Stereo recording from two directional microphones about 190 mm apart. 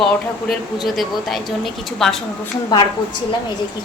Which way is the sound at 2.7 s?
20° left (ahead or behind).